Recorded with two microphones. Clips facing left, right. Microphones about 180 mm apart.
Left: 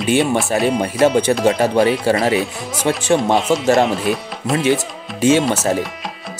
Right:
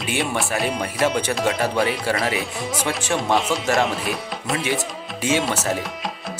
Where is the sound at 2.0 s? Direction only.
35° left (ahead or behind).